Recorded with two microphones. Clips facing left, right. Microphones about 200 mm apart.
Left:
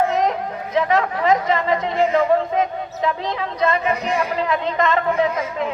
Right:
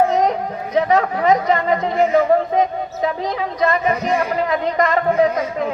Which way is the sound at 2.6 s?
40° right (ahead or behind).